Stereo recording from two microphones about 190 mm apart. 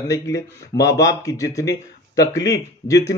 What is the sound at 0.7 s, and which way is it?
Speech, 15° left (ahead or behind).